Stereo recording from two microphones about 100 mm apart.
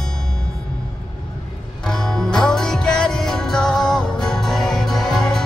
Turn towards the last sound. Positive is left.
turn(degrees=5)  # may be behind; listen again after turning